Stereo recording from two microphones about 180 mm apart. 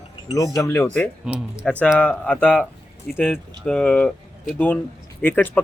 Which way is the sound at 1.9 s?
5° left (ahead or behind).